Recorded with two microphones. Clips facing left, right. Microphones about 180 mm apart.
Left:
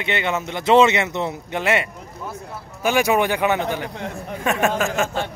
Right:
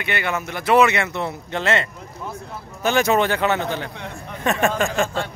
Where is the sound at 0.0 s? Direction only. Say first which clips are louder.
Left 2 dB; 20° left (ahead or behind).